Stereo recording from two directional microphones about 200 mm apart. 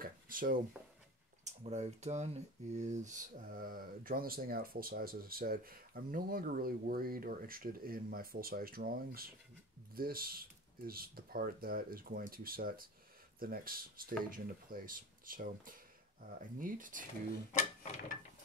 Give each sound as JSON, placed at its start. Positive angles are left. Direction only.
{"t": 0.0, "sound": "a sound", "side_deg": -45}
{"t": 1.4, "sound": "speech", "side_deg": -35}
{"t": 17.5, "sound": "speech", "side_deg": 35}